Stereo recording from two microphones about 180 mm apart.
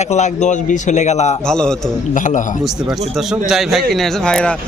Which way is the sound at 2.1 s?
45° left (ahead or behind).